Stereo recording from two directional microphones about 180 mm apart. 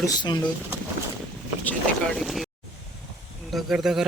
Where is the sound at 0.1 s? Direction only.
20° left (ahead or behind).